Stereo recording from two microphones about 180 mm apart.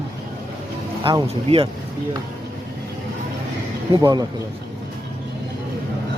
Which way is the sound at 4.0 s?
20° right (ahead or behind).